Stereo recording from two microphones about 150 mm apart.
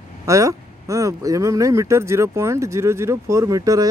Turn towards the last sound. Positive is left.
turn(degrees=-25)  # may be behind; listen again after turning